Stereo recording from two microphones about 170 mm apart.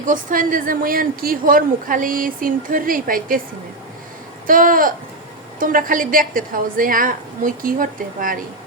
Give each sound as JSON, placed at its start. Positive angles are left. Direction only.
{"t": 0.0, "sound": "a woman's voice", "side_deg": -50}
{"t": 4.4, "sound": "a woman's voice", "side_deg": -55}